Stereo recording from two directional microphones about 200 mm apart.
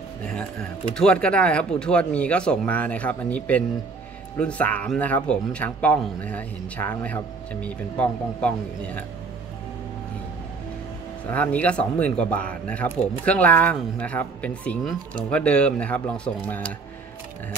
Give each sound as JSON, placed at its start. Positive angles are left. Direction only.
{"t": 0.9, "sound": "speech", "side_deg": 5}
{"t": 11.2, "sound": "speech", "side_deg": 10}